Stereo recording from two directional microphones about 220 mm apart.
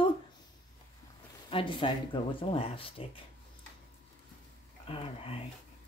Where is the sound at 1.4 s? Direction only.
25° left (ahead or behind).